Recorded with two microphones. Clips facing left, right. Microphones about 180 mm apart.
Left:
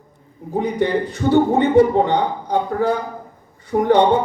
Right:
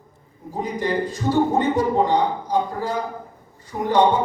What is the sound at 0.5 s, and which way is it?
A man's voice, 65° left (ahead or behind).